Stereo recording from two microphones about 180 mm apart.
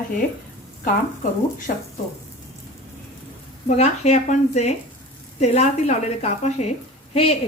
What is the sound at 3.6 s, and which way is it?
A woman's voice, 40° left (ahead or behind).